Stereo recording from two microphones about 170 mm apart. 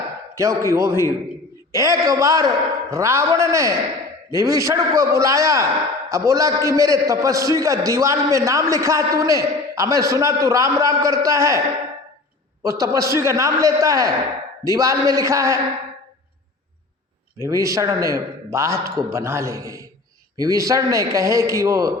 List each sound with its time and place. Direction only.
0.3 s a man's voice: 15° right (ahead or behind)
12.6 s a man's voice: 20° right (ahead or behind)
17.4 s a man's voice: 20° right (ahead or behind)